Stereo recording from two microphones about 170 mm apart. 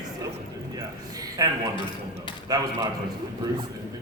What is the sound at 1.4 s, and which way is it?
A man's voice, 20° right (ahead or behind).